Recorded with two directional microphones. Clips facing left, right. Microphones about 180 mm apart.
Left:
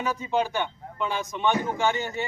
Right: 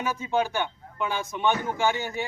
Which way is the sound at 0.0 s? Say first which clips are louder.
Even; 5° right (ahead or behind).